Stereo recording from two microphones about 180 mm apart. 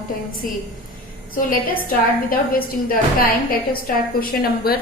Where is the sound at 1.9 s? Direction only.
55° left (ahead or behind).